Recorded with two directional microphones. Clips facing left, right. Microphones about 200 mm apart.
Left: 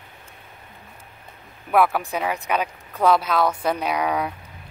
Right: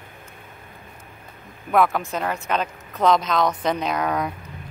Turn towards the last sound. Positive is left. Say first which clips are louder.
# even
turn(degrees=10)  # may be behind; listen again after turning